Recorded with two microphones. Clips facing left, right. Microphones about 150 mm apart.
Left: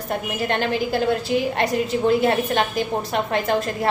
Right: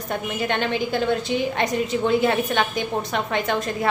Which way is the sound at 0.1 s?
35° left (ahead or behind).